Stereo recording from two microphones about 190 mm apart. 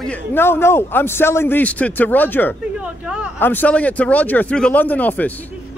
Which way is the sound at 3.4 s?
10° left (ahead or behind).